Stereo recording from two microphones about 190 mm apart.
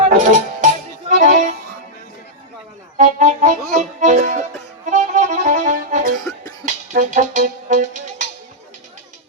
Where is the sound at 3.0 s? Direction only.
40° right (ahead or behind).